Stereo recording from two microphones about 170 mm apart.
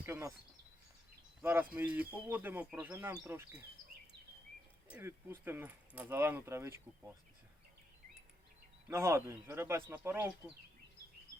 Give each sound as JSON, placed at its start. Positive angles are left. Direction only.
{"t": 0.0, "sound": "a sound", "side_deg": -15}
{"t": 1.4, "sound": "speech", "side_deg": -10}
{"t": 4.9, "sound": "speech", "side_deg": -15}
{"t": 8.9, "sound": "speech", "side_deg": -15}